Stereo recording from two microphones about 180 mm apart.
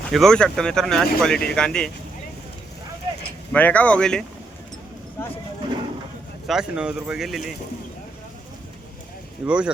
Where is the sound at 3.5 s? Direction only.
10° left (ahead or behind).